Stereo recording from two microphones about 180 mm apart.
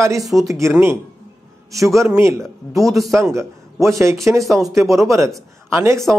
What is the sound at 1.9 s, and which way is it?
Speech, 15° right (ahead or behind).